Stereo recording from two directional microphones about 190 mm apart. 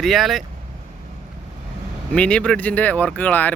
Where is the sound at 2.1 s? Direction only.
5° left (ahead or behind).